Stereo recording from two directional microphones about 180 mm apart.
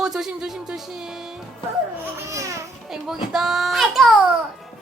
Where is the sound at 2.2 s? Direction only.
15° right (ahead or behind).